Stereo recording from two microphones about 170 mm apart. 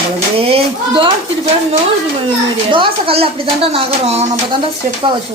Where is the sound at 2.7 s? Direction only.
30° right (ahead or behind).